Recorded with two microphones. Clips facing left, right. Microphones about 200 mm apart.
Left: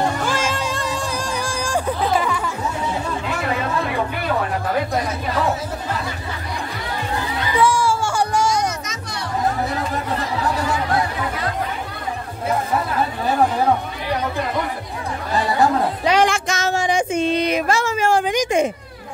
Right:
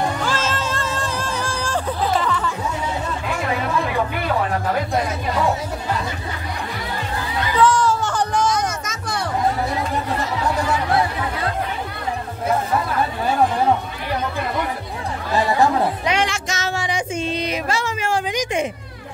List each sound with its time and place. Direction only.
0.3 s music: 15° left (ahead or behind)
7.5 s music: 10° left (ahead or behind)
8.8 s music: 50° right (ahead or behind)
16.1 s a sound: 45° left (ahead or behind)